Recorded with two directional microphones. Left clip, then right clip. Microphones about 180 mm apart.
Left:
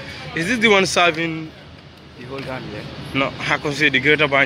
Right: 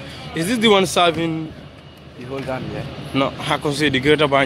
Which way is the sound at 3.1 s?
20° right (ahead or behind).